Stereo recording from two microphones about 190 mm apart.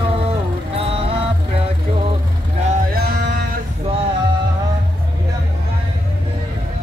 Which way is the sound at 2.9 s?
55° right (ahead or behind).